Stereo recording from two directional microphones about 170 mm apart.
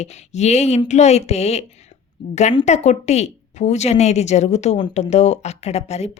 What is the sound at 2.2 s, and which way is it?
Speech, 25° left (ahead or behind).